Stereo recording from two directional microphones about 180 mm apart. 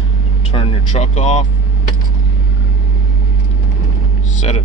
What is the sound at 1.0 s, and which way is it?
Speech, 45° left (ahead or behind).